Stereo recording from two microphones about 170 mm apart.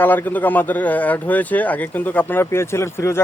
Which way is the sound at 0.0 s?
10° left (ahead or behind).